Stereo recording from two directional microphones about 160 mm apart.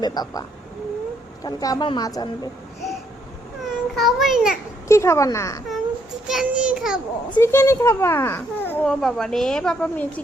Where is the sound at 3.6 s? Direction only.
Centre (ahead or behind).